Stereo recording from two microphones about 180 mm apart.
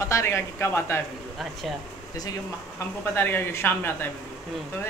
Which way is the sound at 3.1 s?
10° left (ahead or behind).